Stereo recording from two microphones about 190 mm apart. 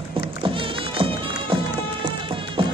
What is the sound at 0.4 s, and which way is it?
Music, 25° right (ahead or behind).